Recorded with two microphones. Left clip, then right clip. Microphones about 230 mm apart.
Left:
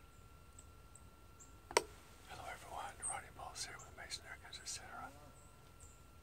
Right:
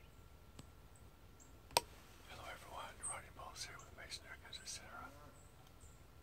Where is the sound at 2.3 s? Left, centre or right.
Centre.